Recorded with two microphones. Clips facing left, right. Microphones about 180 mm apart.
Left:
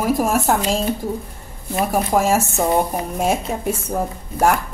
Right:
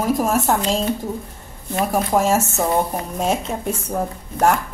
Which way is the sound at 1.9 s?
10° left (ahead or behind).